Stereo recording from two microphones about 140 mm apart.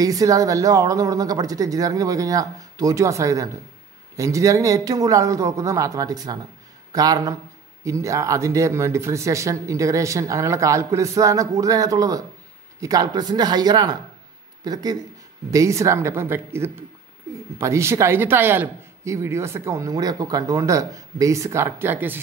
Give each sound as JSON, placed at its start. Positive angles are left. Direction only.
{"t": 0.0, "sound": "a man's voice", "side_deg": -25}